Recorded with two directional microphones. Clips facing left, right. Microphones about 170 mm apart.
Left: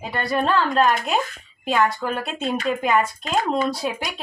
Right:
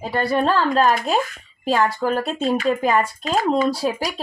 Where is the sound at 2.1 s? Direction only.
30° right (ahead or behind).